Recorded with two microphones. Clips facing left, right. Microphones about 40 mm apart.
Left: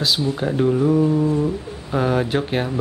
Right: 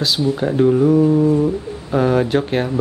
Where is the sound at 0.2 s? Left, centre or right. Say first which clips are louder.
Right 4 dB; centre.